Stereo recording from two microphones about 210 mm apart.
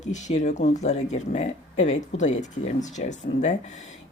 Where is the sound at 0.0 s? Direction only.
35° left (ahead or behind).